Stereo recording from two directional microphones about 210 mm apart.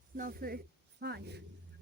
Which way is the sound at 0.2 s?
45° right (ahead or behind).